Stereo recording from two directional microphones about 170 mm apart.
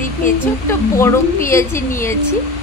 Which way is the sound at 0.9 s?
15° left (ahead or behind).